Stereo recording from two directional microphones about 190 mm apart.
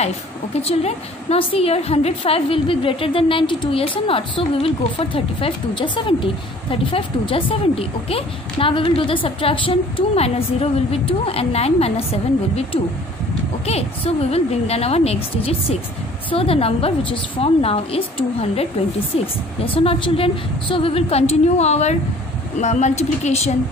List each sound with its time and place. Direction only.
0.6 s a woman's voice: 30° left (ahead or behind)